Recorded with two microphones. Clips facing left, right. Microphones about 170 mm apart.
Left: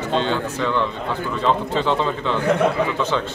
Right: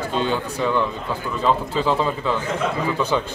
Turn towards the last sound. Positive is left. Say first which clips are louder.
# even
turn(degrees=-10)  # may be behind; listen again after turning